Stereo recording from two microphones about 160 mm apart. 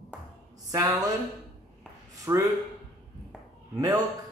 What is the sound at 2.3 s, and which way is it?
Speech, 15° right (ahead or behind).